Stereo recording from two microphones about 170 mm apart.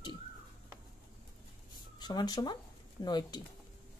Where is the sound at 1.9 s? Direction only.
25° left (ahead or behind).